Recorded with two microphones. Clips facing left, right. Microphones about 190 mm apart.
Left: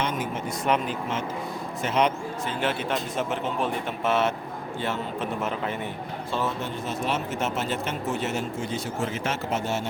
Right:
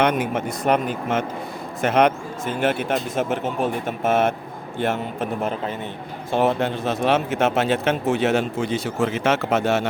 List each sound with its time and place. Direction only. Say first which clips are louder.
0.0 s speech: right 8 dB; 65° right (ahead or behind)
0.6 s speech: right 4 dB; 50° right (ahead or behind)
5.4 s a man's voice: right 3 dB; 35° right (ahead or behind)
6.3 s speech: right 9 dB; 75° right (ahead or behind)